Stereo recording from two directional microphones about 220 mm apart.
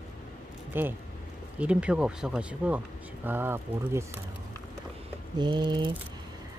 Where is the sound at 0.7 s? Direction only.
10° right (ahead or behind).